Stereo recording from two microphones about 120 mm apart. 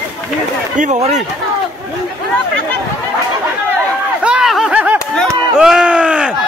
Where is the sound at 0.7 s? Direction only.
80° right.